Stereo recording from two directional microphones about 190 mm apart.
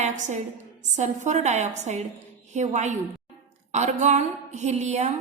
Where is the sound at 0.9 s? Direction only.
40° right (ahead or behind).